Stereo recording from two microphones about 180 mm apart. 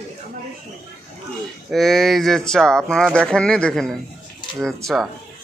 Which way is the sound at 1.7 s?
Centre (ahead or behind).